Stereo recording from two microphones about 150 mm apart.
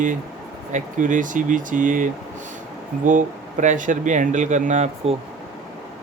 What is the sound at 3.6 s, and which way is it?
Speech, 55° right (ahead or behind).